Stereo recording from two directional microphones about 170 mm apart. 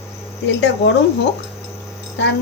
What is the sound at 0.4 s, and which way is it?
Speech, 90° left.